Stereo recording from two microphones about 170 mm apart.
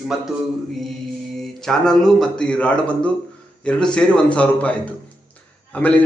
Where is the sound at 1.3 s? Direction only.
Centre (ahead or behind).